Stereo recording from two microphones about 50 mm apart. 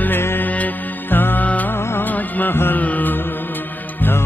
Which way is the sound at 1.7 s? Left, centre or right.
Left.